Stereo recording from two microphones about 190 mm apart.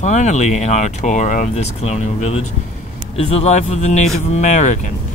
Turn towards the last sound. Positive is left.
turn(degrees=40)  # may be behind; listen again after turning